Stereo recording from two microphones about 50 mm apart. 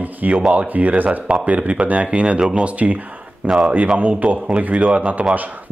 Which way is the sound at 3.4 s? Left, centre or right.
Centre.